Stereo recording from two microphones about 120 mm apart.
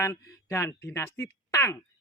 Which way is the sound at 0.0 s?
25° left (ahead or behind).